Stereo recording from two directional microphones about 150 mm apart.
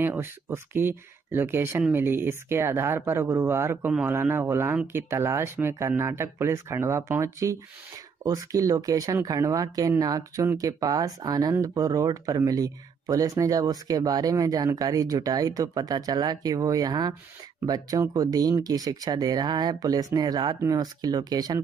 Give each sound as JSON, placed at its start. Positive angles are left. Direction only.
{"t": 0.0, "sound": "speech", "side_deg": -15}